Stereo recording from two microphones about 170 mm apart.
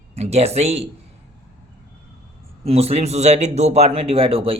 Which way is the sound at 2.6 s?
35° right (ahead or behind).